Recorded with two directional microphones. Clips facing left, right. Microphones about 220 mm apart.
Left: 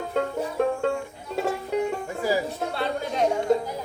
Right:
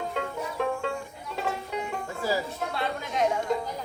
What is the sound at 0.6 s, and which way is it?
Music, 45° left (ahead or behind).